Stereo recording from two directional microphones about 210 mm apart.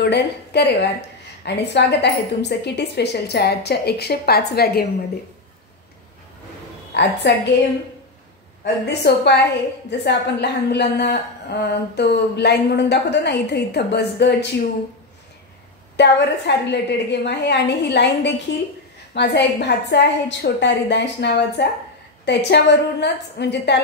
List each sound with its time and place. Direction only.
0.0 s a woman's voice: 55° left (ahead or behind)
6.9 s a woman's voice: 55° left (ahead or behind)
9.0 s a woman's voice: 50° left (ahead or behind)
16.0 s a woman's voice: 55° left (ahead or behind)